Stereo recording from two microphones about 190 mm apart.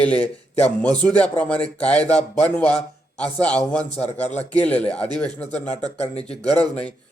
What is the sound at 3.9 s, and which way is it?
Speech, 35° left (ahead or behind).